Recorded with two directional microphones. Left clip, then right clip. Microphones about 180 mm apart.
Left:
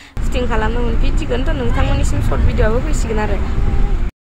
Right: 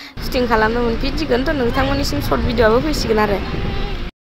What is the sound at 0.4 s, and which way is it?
A woman's voice, 15° right (ahead or behind).